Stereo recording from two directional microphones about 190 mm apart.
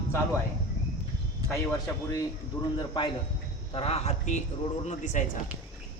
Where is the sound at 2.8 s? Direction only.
25° left (ahead or behind); by 5.2 s 40° left (ahead or behind).